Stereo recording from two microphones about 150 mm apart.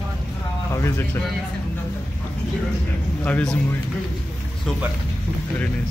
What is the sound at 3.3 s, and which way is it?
Speech, 10° left (ahead or behind).